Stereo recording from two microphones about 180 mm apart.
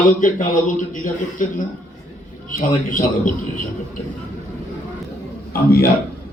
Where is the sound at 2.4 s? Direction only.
50° left (ahead or behind).